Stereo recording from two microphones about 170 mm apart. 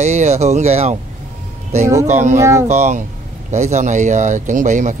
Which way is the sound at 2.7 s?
45° right (ahead or behind).